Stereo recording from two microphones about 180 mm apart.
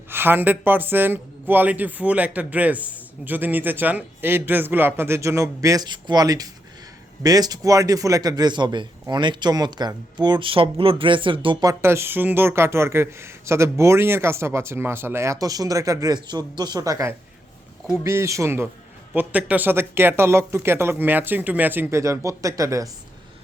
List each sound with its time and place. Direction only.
0.1 s a man's voice: 10° right (ahead or behind); by 11.7 s 30° right (ahead or behind)
11.7 s speech: 15° right (ahead or behind)